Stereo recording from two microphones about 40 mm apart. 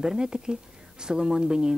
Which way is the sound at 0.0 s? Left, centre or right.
Centre.